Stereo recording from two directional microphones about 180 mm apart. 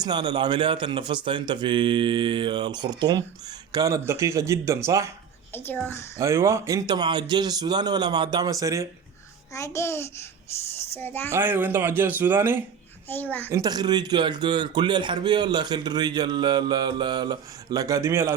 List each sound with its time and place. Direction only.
0.0 s a man's voice: 25° right (ahead or behind)
5.5 s a woman's voice: 10° left (ahead or behind)
6.1 s a man's voice: 15° right (ahead or behind)
9.5 s a woman's voice: 15° left (ahead or behind)
11.3 s speech: 15° right (ahead or behind)
13.1 s a woman's voice: 10° left (ahead or behind)
13.5 s a man's voice: 20° right (ahead or behind)